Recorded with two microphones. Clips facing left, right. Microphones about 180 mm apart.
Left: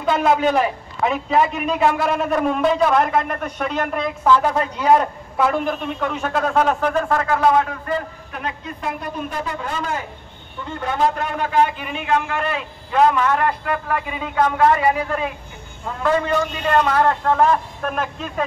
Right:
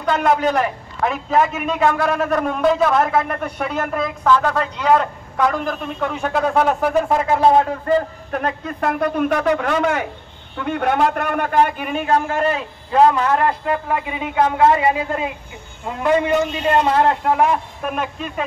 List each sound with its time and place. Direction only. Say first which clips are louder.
0.1 s a man's voice: even; 5° left (ahead or behind)
4.4 s a man's voice: even; 10° left (ahead or behind); by 7.3 s 15° right (ahead or behind)
7.3 s a man's voice: right 3 dB; 30° right (ahead or behind)
8.3 s a man's voice: right 6 dB; 45° right (ahead or behind); by 18.4 s 5° right (ahead or behind)